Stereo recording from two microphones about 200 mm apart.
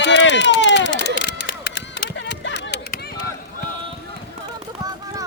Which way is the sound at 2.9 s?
50° left (ahead or behind).